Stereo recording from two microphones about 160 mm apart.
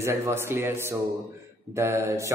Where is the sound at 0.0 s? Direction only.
15° right (ahead or behind).